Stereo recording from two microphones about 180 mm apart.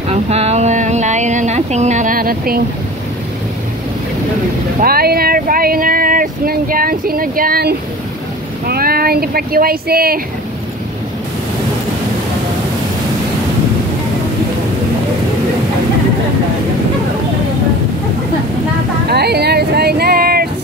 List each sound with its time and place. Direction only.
0.1 s a sound: 35° right (ahead or behind); by 2.6 s 55° right (ahead or behind)
4.8 s speech: 55° right (ahead or behind)
19.0 s speech: 65° right (ahead or behind)